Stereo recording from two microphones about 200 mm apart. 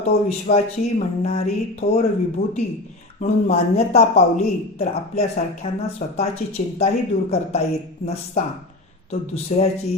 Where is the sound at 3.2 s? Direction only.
30° left (ahead or behind).